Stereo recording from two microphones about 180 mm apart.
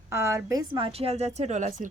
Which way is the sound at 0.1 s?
15° right (ahead or behind).